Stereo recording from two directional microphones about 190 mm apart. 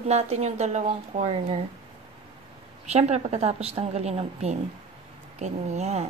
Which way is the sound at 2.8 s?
35° right (ahead or behind).